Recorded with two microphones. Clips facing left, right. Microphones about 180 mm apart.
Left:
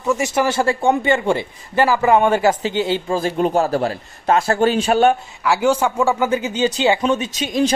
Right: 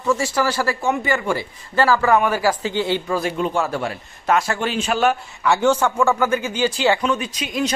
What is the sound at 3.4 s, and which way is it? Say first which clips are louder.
A man's voice: left 5 dB; 40° left (ahead or behind).